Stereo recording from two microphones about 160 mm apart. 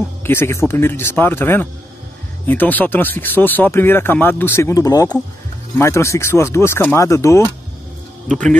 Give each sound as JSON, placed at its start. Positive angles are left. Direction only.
{"t": 0.2, "sound": "speech", "side_deg": 15}
{"t": 8.3, "sound": "speech", "side_deg": 5}